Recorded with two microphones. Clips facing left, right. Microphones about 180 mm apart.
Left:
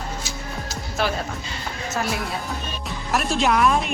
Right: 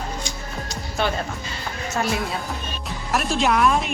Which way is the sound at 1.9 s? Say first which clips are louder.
Right 2 dB; centre (ahead or behind).